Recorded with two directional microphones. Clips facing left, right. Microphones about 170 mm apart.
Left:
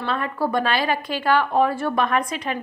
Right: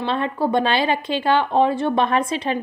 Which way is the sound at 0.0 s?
25° right (ahead or behind).